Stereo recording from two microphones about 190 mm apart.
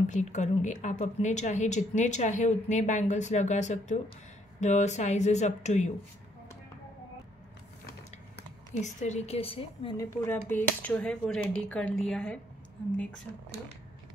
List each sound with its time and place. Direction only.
0.0 s a woman's voice: 40° left (ahead or behind)
8.7 s a woman's voice: 40° left (ahead or behind)
9.9 s speech: 10° left (ahead or behind)